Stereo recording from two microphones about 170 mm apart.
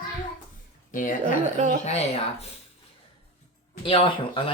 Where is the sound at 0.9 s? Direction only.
50° left (ahead or behind).